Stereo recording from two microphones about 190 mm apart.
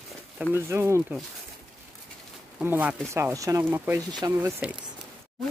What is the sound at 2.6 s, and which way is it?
Speech, 10° right (ahead or behind).